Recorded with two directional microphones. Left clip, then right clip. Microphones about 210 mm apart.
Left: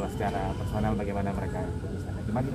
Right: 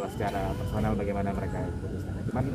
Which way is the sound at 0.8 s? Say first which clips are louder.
Right 1 dB; centre (ahead or behind).